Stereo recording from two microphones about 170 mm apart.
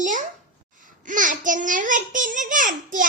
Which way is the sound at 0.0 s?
50° right (ahead or behind).